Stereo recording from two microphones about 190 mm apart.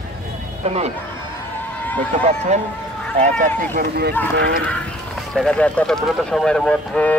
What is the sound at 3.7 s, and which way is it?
Speech, 55° right (ahead or behind).